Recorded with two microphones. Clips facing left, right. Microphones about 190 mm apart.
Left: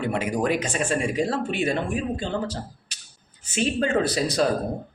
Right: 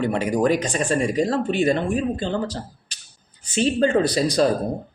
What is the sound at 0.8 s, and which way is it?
Speech, 40° right (ahead or behind).